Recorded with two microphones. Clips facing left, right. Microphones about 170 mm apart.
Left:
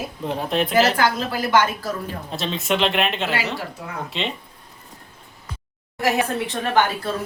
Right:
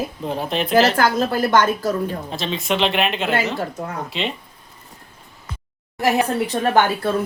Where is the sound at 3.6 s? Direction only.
45° right (ahead or behind).